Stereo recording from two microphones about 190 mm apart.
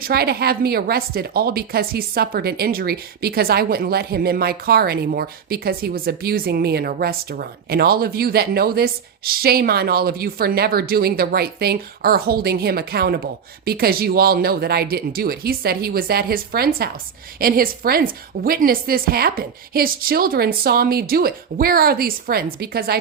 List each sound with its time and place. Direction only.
0.0 s a woman's voice: 55° right (ahead or behind)